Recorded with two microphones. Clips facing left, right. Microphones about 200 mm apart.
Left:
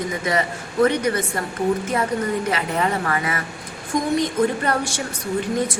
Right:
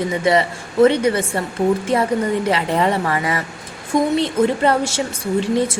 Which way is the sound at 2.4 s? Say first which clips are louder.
Right 4 dB; 30° right (ahead or behind).